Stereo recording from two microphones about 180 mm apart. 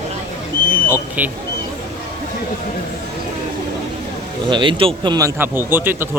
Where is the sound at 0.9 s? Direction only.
10° right (ahead or behind).